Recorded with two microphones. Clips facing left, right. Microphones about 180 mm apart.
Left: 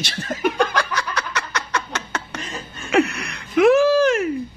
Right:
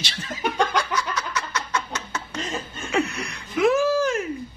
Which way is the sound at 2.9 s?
70° left (ahead or behind).